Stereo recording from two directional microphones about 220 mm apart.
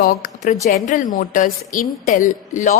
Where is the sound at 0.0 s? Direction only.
40° left (ahead or behind).